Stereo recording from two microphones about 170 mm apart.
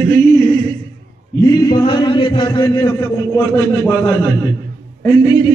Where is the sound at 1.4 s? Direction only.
25° left (ahead or behind).